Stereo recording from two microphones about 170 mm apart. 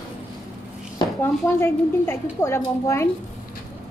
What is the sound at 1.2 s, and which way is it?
Speech, 15° left (ahead or behind).